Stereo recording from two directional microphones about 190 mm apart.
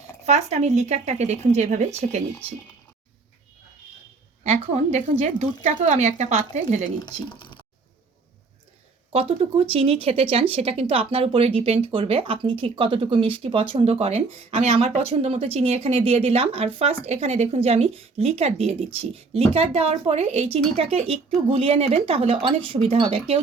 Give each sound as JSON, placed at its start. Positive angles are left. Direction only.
{"t": 0.3, "sound": "speech", "side_deg": -35}
{"t": 4.4, "sound": "speech", "side_deg": -35}
{"t": 7.0, "sound": "speech", "side_deg": 25}
{"t": 9.1, "sound": "speech", "side_deg": -30}